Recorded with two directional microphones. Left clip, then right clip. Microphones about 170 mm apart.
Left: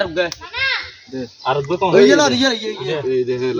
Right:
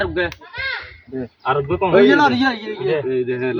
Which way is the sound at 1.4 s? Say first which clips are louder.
Left 1 dB; 5° left (ahead or behind).